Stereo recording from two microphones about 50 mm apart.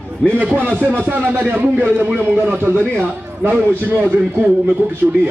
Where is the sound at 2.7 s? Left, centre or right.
Right.